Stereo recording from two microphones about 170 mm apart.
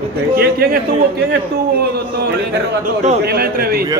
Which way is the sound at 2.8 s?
45° right (ahead or behind).